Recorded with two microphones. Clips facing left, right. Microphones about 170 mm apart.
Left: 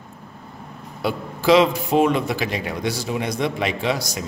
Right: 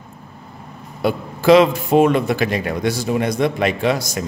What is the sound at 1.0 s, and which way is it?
A man's voice, 50° right (ahead or behind).